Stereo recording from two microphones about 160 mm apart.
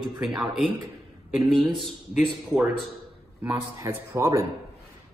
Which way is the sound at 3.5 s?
20° right (ahead or behind).